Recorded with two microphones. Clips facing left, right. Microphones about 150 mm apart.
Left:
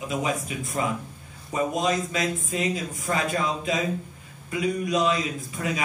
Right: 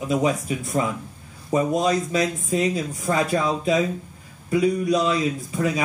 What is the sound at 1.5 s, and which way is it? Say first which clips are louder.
Speech: right 4 dB; 35° right (ahead or behind).